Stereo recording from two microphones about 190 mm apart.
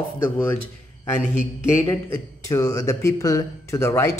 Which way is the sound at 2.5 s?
15° left (ahead or behind).